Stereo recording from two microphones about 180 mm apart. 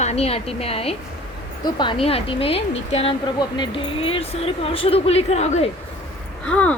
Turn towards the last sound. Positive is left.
turn(degrees=5)  # may be behind; listen again after turning